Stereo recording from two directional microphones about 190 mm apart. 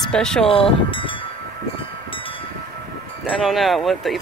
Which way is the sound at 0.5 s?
30° left (ahead or behind).